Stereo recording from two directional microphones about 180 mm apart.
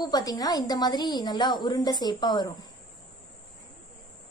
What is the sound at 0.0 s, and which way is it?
A woman's voice, 20° left (ahead or behind).